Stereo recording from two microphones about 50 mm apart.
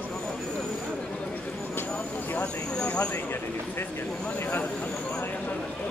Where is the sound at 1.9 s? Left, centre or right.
Left.